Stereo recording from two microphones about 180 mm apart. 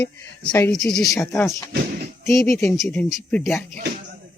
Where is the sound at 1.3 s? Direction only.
15° left (ahead or behind).